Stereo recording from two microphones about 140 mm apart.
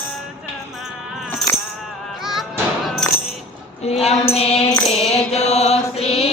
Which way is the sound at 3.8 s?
50° left (ahead or behind).